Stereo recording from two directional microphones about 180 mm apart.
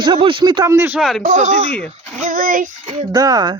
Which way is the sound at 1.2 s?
40° right (ahead or behind).